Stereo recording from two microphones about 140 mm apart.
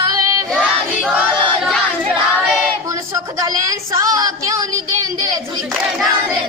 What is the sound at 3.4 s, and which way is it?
A woman's voice, 25° right (ahead or behind).